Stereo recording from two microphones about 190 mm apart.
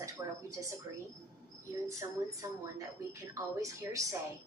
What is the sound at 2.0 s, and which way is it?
A woman's voice, 20° right (ahead or behind).